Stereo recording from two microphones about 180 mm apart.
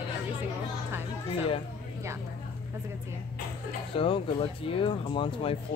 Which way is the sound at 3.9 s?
30° left (ahead or behind).